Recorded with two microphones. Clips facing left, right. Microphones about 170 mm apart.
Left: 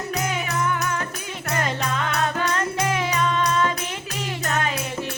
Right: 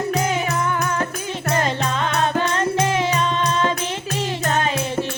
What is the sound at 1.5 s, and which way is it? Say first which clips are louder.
Music: right 4 dB; 25° right (ahead or behind).